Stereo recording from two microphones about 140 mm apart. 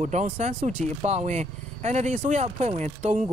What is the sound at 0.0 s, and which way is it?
Speech, 60° right (ahead or behind).